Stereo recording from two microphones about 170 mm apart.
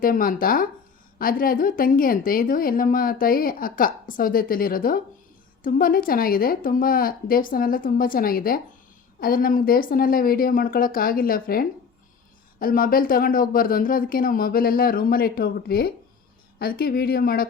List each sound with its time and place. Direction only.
0.0 s a woman's voice: 55° left (ahead or behind)